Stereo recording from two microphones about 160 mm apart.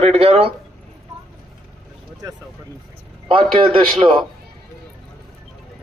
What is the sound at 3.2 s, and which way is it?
Speech, 35° right (ahead or behind).